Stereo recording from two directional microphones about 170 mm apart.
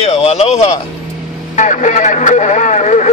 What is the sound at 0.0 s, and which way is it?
Speech, 40° left (ahead or behind).